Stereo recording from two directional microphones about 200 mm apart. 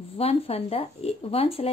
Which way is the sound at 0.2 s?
30° left (ahead or behind).